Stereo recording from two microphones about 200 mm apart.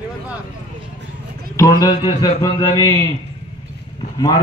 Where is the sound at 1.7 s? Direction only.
20° left (ahead or behind).